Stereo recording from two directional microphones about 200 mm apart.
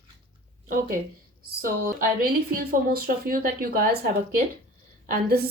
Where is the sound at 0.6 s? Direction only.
45° right (ahead or behind).